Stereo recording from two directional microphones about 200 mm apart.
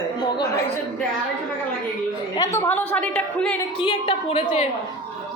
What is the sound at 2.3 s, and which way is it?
A woman's voice, 15° left (ahead or behind).